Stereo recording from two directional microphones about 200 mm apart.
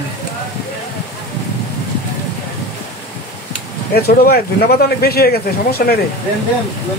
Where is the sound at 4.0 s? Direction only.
50° left (ahead or behind).